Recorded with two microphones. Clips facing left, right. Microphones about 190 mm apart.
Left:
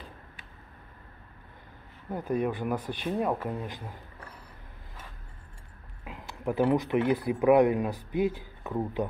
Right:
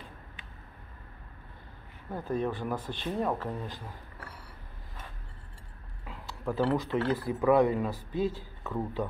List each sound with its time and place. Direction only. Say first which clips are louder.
2.0 s speech: left 2 dB; 15° left (ahead or behind)
6.0 s speech: left 2 dB; 20° left (ahead or behind)